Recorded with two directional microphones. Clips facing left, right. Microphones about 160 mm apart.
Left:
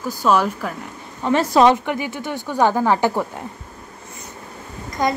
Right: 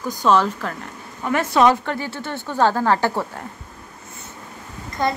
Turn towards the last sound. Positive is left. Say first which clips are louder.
# left 1 dB
turn(degrees=15)  # may be behind; listen again after turning